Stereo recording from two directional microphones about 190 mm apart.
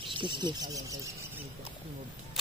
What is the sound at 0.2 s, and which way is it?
Speech, 25° right (ahead or behind).